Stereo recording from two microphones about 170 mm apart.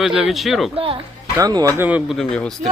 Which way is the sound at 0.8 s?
30° right (ahead or behind).